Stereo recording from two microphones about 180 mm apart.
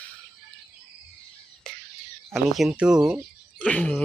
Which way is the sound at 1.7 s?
5° left (ahead or behind).